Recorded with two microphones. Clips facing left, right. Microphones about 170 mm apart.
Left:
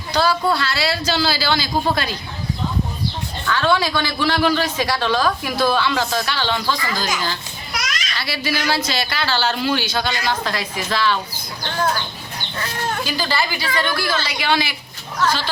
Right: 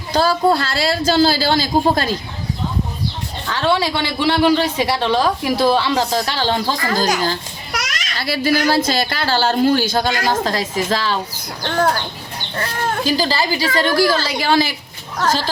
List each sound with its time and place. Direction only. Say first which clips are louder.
0.1 s a woman's voice: right 3 dB; 45° right (ahead or behind)
3.4 s a man's voice: right 1 dB; 30° right (ahead or behind)
13.1 s a man's voice: right 7 dB; 35° right (ahead or behind)